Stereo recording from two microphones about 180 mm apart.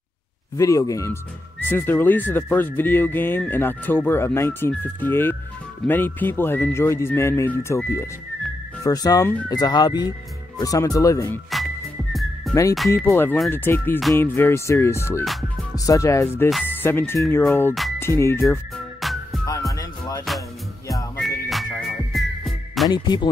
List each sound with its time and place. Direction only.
0.6 s speech: 20° left (ahead or behind)
11.5 s whistling: centre (ahead or behind)
12.9 s speech: 15° left (ahead or behind)
18.9 s music: centre (ahead or behind)
19.7 s music: 20° left (ahead or behind)
21.2 s music: centre (ahead or behind)
22.8 s speech: 25° left (ahead or behind)